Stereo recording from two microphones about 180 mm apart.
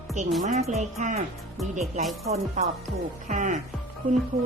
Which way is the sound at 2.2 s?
35° right (ahead or behind).